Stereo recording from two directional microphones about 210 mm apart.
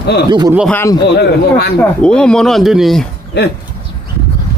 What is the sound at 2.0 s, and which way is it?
Speech, 5° left (ahead or behind).